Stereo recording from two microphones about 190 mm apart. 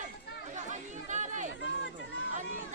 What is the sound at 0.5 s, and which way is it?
Chatter, 40° right (ahead or behind).